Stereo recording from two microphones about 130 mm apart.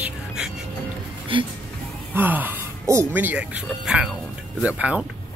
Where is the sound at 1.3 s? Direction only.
40° right (ahead or behind).